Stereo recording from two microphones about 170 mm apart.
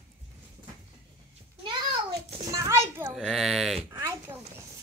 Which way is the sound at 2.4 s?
20° right (ahead or behind).